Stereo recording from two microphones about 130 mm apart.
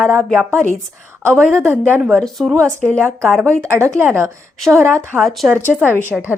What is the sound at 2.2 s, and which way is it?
A woman's voice, centre (ahead or behind).